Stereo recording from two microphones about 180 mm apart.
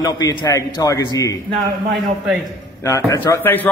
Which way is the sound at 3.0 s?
15° left (ahead or behind).